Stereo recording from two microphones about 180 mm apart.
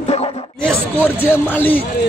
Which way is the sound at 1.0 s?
10° left (ahead or behind).